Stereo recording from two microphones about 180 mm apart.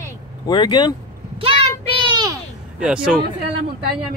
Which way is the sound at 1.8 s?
30° right (ahead or behind).